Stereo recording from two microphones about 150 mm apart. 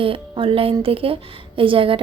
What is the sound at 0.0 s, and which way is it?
A woman's voice, 35° right (ahead or behind).